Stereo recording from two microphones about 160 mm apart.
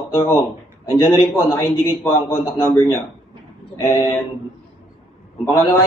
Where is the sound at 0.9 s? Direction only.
20° left (ahead or behind).